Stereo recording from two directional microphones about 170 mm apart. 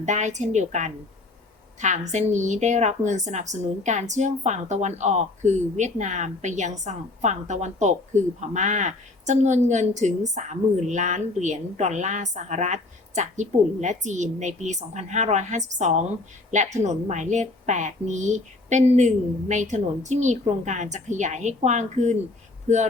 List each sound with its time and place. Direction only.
0.0 s a woman's voice: 45° right (ahead or behind)